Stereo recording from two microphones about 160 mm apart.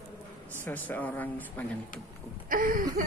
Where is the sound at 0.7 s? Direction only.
10° left (ahead or behind).